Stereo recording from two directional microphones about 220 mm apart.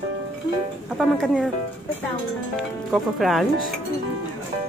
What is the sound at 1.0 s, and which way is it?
Speech, centre (ahead or behind).